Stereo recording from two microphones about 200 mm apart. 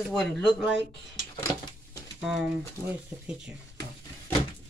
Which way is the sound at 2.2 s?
Centre (ahead or behind).